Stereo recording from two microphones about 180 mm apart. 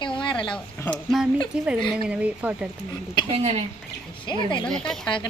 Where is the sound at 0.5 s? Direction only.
Centre (ahead or behind).